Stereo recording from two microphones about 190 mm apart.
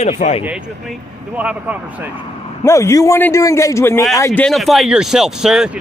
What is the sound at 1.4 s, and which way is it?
Speech, 5° right (ahead or behind).